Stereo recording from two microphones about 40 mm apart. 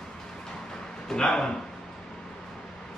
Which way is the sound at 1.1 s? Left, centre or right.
Centre.